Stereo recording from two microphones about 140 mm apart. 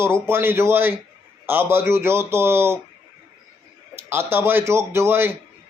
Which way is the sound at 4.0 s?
15° right (ahead or behind).